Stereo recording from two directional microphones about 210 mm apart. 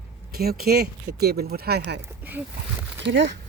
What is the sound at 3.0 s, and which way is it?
Speech, 60° right (ahead or behind).